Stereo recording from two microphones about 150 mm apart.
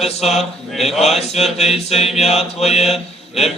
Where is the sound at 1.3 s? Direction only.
45° left (ahead or behind).